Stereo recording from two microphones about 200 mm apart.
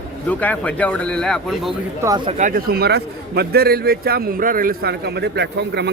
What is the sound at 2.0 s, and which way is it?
Speech, 20° right (ahead or behind).